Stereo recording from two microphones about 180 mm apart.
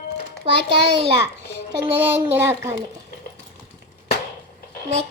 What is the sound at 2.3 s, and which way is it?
Speech, 15° right (ahead or behind).